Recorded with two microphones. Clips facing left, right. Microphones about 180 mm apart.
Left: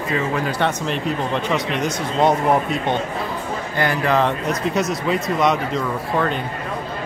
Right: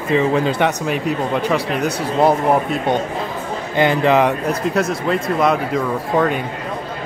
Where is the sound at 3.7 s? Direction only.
20° right (ahead or behind).